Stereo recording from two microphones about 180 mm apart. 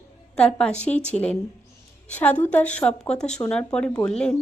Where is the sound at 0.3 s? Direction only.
5° left (ahead or behind).